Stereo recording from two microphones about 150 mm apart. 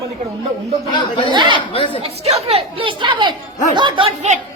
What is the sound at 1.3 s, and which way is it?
Speech, 30° right (ahead or behind).